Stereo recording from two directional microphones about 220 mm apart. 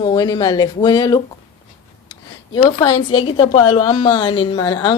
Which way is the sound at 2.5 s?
25° left (ahead or behind).